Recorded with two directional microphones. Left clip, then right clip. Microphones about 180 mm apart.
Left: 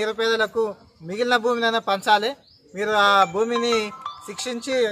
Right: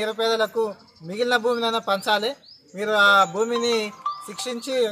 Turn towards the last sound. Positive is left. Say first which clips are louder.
# left 1 dB
turn(degrees=30)  # may be behind; listen again after turning